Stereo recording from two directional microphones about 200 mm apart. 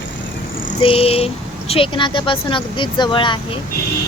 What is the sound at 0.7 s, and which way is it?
Speech, 30° left (ahead or behind).